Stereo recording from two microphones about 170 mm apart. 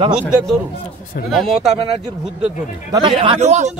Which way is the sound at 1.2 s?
Centre (ahead or behind).